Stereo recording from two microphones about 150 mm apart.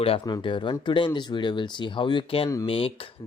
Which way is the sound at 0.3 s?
30° left (ahead or behind).